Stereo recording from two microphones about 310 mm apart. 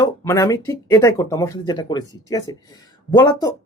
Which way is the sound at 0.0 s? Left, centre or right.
Centre.